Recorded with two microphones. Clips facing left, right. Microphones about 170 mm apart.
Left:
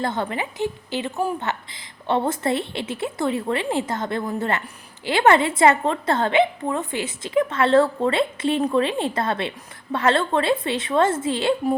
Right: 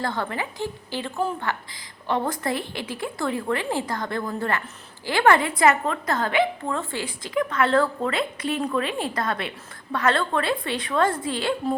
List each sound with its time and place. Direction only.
0.0 s a woman's voice: 20° left (ahead or behind)